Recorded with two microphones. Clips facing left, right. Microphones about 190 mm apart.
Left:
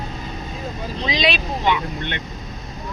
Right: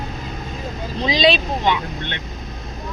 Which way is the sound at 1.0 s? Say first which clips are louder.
Right 5 dB; 30° right (ahead or behind).